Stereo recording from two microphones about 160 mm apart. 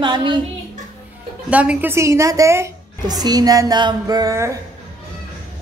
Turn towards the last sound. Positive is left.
turn(degrees=-20)  # may be behind; listen again after turning